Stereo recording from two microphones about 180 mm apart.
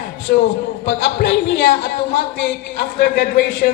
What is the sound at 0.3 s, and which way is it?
Speech, 60° left (ahead or behind).